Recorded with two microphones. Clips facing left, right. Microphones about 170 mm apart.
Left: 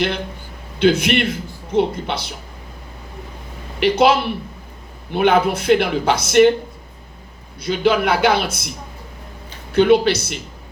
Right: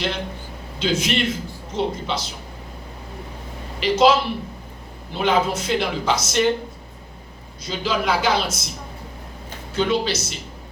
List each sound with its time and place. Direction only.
0.8 s a man's voice: 60° left (ahead or behind)
3.8 s speech: 60° left (ahead or behind)
7.6 s speech: 60° left (ahead or behind)
9.7 s speech: 60° left (ahead or behind)